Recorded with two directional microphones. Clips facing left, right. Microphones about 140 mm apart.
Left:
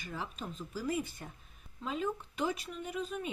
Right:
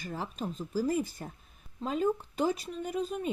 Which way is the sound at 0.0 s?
40° right (ahead or behind).